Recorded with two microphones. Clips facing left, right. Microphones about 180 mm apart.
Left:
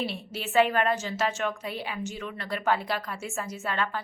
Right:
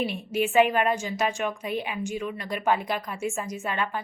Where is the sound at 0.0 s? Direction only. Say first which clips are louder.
Right 7 dB; 15° right (ahead or behind).